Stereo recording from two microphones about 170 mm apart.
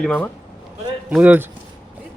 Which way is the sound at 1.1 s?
10° right (ahead or behind).